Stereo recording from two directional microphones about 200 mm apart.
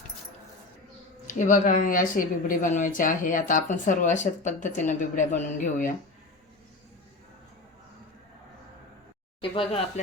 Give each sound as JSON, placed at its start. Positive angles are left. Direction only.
{"t": 1.4, "sound": "speech", "side_deg": 40}
{"t": 9.4, "sound": "speech", "side_deg": 25}